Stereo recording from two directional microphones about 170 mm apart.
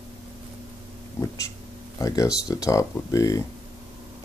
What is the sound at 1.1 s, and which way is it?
Speech, 20° left (ahead or behind).